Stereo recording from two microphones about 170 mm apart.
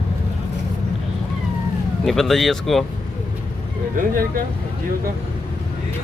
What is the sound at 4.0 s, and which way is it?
Speech, 55° right (ahead or behind).